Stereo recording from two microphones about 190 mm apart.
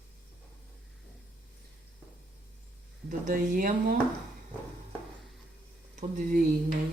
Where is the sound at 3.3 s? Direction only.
45° right (ahead or behind).